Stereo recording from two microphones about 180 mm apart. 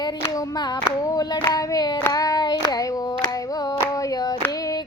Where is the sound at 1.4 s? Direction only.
20° left (ahead or behind).